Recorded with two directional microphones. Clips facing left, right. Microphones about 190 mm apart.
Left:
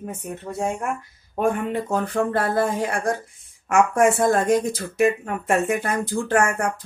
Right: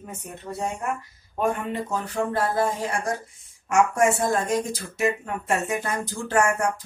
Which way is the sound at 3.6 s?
55° left (ahead or behind).